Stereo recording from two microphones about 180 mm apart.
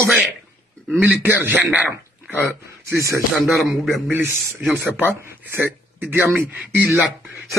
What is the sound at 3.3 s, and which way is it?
A man's voice, centre (ahead or behind).